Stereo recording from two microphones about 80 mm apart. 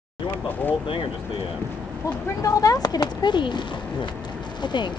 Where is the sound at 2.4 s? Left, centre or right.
Left.